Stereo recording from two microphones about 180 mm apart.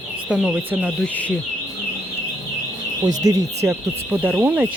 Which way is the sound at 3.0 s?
20° right (ahead or behind).